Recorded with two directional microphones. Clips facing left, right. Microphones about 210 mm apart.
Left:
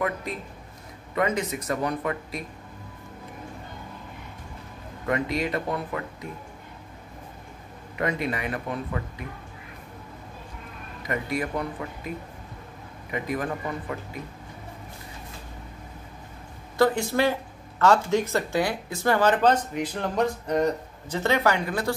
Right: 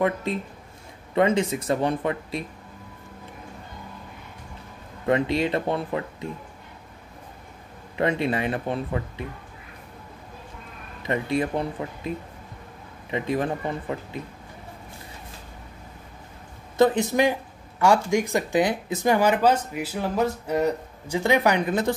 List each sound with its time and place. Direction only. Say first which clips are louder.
0.0 s speech: right 5 dB; 25° right (ahead or behind)
5.0 s speech: right 4 dB; 25° right (ahead or behind)
8.0 s speech: right 4 dB; 30° right (ahead or behind)
11.0 s speech: right 4 dB; 25° right (ahead or behind)
13.1 s speech: right 3 dB; 25° right (ahead or behind)
16.7 s speech: right 3 dB; 20° right (ahead or behind)